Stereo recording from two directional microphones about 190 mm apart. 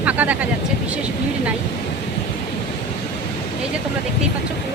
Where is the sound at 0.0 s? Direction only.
10° right (ahead or behind).